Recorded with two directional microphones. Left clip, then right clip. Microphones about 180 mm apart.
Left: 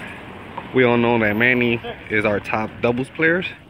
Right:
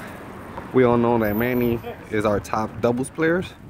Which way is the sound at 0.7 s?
20° right (ahead or behind).